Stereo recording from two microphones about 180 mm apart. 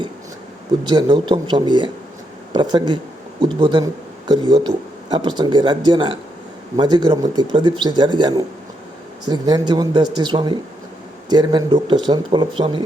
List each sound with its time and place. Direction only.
0.9 s speech: 25° right (ahead or behind)